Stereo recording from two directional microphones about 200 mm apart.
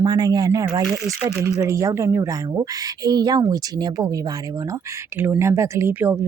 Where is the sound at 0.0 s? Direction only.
20° right (ahead or behind).